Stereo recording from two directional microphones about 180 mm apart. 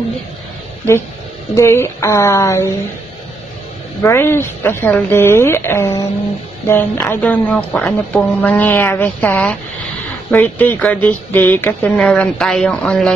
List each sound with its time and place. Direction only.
1.5 s speech: 15° left (ahead or behind)
4.0 s speech: 15° left (ahead or behind)